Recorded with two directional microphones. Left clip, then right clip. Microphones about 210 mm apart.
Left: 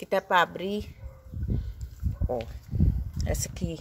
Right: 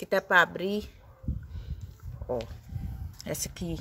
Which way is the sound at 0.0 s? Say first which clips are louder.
Right 1 dB; 5° right (ahead or behind).